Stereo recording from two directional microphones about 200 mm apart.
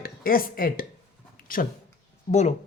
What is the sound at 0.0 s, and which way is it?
Speech, 45° left (ahead or behind).